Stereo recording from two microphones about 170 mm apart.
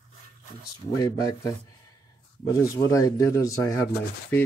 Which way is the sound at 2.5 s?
20° left (ahead or behind).